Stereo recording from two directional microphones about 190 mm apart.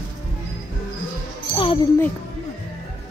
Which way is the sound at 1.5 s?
25° left (ahead or behind).